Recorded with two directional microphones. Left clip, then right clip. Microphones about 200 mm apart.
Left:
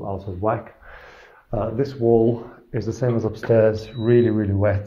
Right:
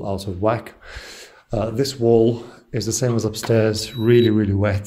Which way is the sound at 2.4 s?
60° right (ahead or behind).